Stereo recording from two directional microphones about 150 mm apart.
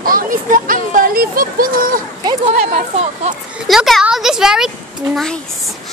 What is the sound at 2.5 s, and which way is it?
Speech, 50° right (ahead or behind).